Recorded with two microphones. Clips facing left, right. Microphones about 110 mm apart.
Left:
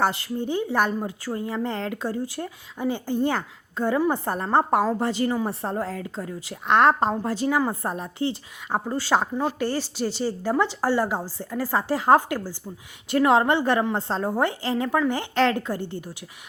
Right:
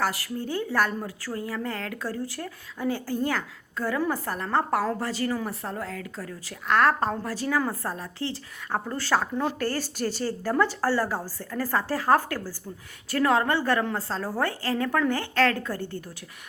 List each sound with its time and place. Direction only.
0.0 s a woman's voice: 25° left (ahead or behind)